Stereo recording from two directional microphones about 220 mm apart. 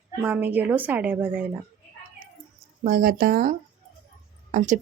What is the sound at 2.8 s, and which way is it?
Speech, 35° right (ahead or behind).